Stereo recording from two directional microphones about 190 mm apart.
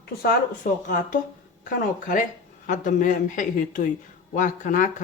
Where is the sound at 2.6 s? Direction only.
45° left (ahead or behind).